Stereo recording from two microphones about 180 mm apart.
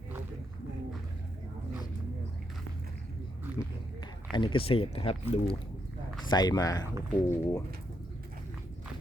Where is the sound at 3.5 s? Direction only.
10° right (ahead or behind).